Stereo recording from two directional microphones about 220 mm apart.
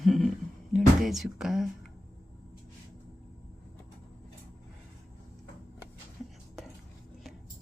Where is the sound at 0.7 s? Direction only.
Centre (ahead or behind).